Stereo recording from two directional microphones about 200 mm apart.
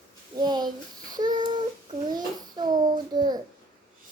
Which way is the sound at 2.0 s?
20° right (ahead or behind).